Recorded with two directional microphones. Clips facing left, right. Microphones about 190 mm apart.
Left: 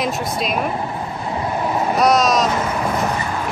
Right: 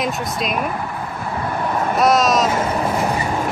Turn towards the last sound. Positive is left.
turn(degrees=-5)  # may be behind; listen again after turning